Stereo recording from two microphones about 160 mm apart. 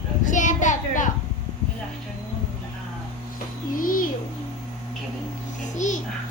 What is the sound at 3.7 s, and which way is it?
Speech, 60° left (ahead or behind).